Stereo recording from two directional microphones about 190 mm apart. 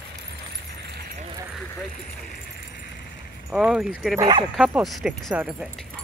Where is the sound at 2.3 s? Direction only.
50° left (ahead or behind).